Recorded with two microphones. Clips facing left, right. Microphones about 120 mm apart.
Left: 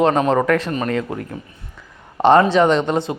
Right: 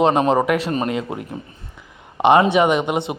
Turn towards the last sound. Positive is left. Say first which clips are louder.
# left 2 dB
turn(degrees=-15)  # may be behind; listen again after turning